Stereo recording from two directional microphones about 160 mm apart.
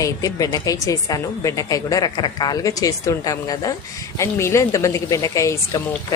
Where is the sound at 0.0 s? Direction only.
20° left (ahead or behind).